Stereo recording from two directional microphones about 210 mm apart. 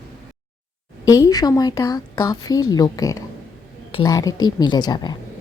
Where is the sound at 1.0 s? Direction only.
15° left (ahead or behind).